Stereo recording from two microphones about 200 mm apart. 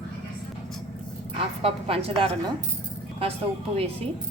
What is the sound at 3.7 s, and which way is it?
Speech, 30° right (ahead or behind).